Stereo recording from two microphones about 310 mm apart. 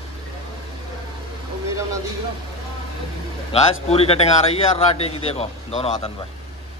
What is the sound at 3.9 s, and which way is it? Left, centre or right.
A man's voice, centre.